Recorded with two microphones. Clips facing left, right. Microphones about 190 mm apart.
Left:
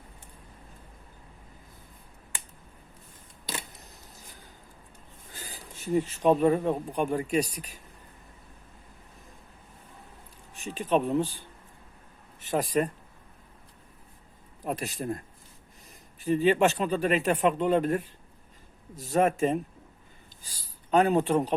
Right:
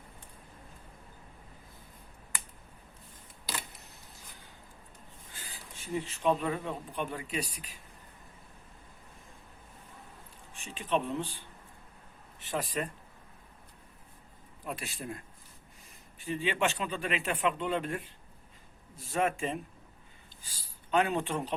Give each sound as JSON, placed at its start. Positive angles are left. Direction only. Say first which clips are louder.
{"t": 5.3, "sound": "speech", "louder": "left 6 dB", "side_deg": 40}
{"t": 10.5, "sound": "speech", "louder": "left 6 dB", "side_deg": 40}
{"t": 14.6, "sound": "speech", "louder": "left 7 dB", "side_deg": 40}
{"t": 16.2, "sound": "a man's voice", "louder": "left 9 dB", "side_deg": 40}